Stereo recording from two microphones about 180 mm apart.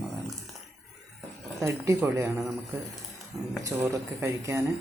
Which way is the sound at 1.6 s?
15° right (ahead or behind).